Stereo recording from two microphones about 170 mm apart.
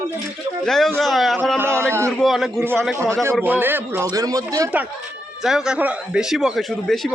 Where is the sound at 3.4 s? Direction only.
10° right (ahead or behind).